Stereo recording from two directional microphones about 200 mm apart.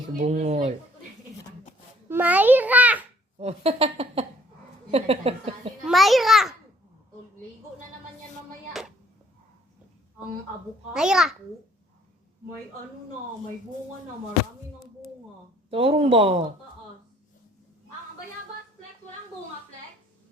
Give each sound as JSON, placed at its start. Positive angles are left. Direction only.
{"t": 0.1, "sound": "speech", "side_deg": -35}
{"t": 2.0, "sound": "babbling", "side_deg": -10}
{"t": 3.3, "sound": "speech", "side_deg": -30}
{"t": 5.8, "sound": "a sound", "side_deg": 0}
{"t": 10.9, "sound": "a child's voice", "side_deg": -5}
{"t": 15.7, "sound": "speech", "side_deg": -30}